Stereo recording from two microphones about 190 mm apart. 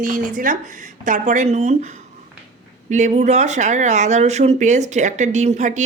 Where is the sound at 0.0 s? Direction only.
45° right (ahead or behind).